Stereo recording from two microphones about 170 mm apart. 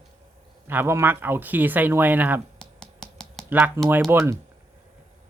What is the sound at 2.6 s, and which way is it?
Finger snapping, 5° left (ahead or behind).